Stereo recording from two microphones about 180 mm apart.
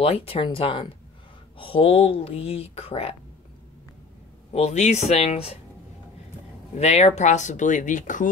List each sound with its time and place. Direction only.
0.0 s speech: 30° left (ahead or behind)
4.5 s speech: 35° left (ahead or behind)
6.8 s speech: 35° left (ahead or behind)